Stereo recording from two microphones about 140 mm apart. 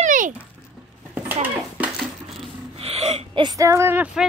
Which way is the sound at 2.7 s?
45° right (ahead or behind).